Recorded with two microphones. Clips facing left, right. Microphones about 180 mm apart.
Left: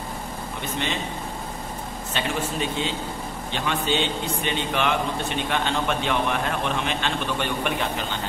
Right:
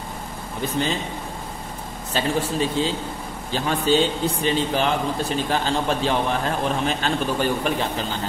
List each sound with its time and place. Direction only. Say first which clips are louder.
2.1 s a man's voice: right 5 dB; 35° right (ahead or behind)